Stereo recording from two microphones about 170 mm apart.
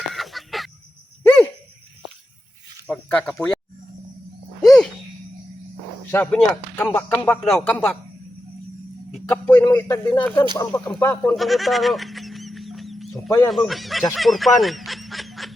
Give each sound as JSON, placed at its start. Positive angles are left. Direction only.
{"t": 0.1, "sound": "fowl", "side_deg": 0}
{"t": 1.2, "sound": "a sound", "side_deg": 10}
{"t": 2.8, "sound": "speech", "side_deg": 5}
{"t": 4.6, "sound": "a sound", "side_deg": 0}
{"t": 6.1, "sound": "speech", "side_deg": 10}
{"t": 9.3, "sound": "speech", "side_deg": 15}
{"t": 11.3, "sound": "fowl", "side_deg": 0}
{"t": 13.5, "sound": "speech", "side_deg": 0}
{"t": 14.1, "sound": "honk", "side_deg": 0}